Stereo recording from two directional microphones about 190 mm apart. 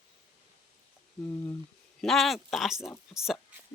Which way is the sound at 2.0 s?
Centre (ahead or behind).